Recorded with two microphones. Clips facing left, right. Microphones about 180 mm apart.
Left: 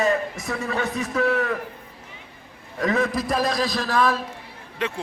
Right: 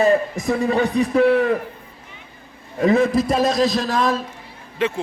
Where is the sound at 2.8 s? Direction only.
25° right (ahead or behind).